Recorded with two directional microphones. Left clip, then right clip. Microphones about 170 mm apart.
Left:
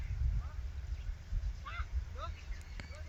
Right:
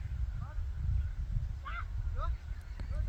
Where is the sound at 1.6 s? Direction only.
25° right (ahead or behind).